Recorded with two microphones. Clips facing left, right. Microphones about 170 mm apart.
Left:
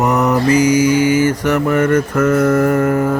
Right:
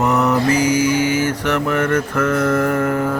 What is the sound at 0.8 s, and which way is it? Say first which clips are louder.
Mantra: left 4 dB; 50° left (ahead or behind).